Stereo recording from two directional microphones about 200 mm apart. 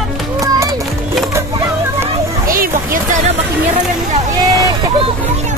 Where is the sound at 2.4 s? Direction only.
45° right (ahead or behind).